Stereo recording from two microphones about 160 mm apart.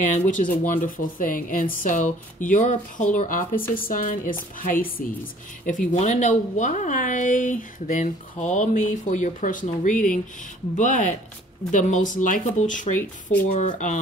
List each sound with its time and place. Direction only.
0.0 s a woman's voice: 55° left (ahead or behind)